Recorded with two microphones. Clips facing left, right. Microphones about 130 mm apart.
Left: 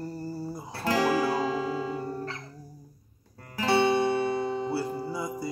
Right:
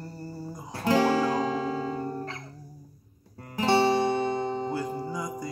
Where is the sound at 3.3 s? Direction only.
25° right (ahead or behind).